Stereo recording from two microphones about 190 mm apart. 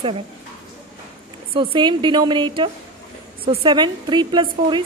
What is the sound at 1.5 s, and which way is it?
A woman's voice, 25° right (ahead or behind).